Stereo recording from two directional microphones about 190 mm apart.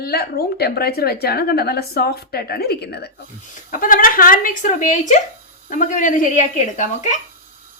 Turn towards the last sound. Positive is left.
turn(degrees=40)  # may be behind; listen again after turning